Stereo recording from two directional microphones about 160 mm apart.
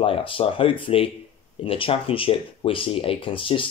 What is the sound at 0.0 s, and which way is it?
Speech, 35° left (ahead or behind).